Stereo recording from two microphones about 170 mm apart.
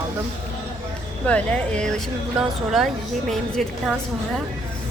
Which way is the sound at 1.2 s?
5° left (ahead or behind).